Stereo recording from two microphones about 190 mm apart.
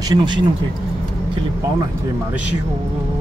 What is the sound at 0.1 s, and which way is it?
Speech, 25° right (ahead or behind).